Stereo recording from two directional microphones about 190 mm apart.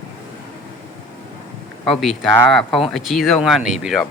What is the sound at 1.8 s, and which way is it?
Speech, centre (ahead or behind).